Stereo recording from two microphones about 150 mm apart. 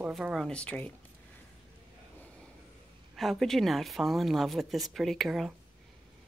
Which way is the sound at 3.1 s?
Centre (ahead or behind).